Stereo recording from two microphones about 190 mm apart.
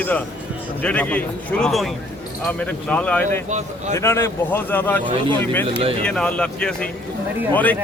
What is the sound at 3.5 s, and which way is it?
Speech, 35° right (ahead or behind).